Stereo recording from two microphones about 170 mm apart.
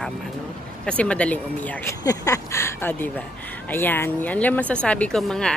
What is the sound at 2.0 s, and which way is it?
Speech, 20° left (ahead or behind).